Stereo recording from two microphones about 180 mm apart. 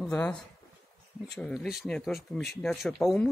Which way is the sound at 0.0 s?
5° left (ahead or behind).